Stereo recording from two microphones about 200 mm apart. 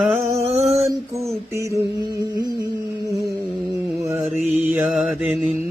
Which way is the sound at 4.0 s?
15° right (ahead or behind).